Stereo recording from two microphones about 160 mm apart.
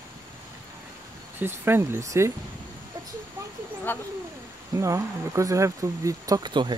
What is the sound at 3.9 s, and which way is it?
Speech, 10° left (ahead or behind).